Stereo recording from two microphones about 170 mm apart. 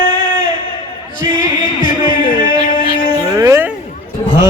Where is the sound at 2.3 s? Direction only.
50° left (ahead or behind).